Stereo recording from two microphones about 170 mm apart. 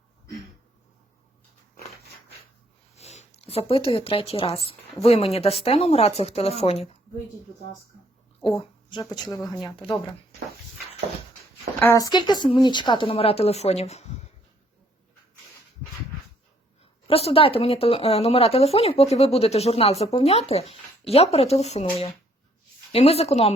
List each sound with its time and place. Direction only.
2.9 s speech: 40° left (ahead or behind)
8.4 s speech: 30° left (ahead or behind)
11.8 s speech: 15° left (ahead or behind)
12.1 s speech: 25° left (ahead or behind)
17.1 s speech: 35° left (ahead or behind)